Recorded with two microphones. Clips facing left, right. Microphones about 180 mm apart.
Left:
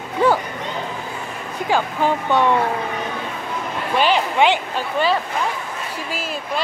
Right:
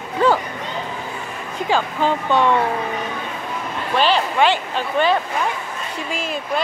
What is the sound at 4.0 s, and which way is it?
Speech, 15° left (ahead or behind).